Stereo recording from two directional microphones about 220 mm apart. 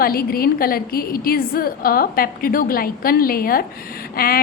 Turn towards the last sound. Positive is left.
turn(degrees=40)  # may be behind; listen again after turning